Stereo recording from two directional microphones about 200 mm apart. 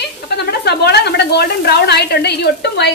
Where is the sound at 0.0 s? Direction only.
55° left (ahead or behind).